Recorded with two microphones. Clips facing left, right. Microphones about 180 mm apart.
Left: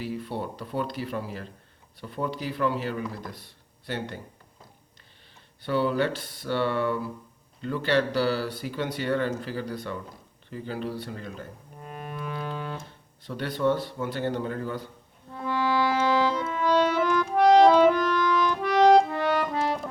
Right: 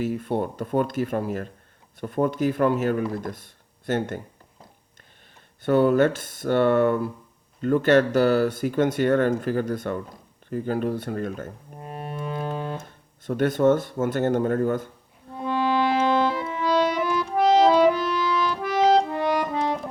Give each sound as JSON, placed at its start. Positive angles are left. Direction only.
{"t": 0.0, "sound": "speech", "side_deg": -50}
{"t": 5.6, "sound": "speech", "side_deg": -50}
{"t": 11.8, "sound": "music", "side_deg": -30}
{"t": 13.2, "sound": "speech", "side_deg": -50}
{"t": 15.3, "sound": "music", "side_deg": -20}